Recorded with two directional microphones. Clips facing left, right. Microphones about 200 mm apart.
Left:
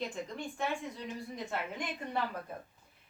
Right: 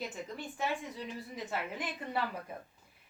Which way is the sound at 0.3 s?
5° right (ahead or behind).